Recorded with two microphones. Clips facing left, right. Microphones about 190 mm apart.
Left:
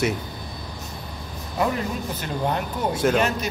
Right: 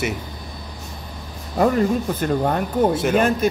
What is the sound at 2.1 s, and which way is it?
Speech, 50° right (ahead or behind).